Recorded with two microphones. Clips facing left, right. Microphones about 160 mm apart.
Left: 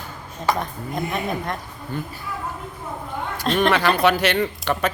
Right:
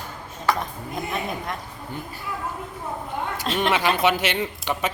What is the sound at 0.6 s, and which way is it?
Speech, centre (ahead or behind).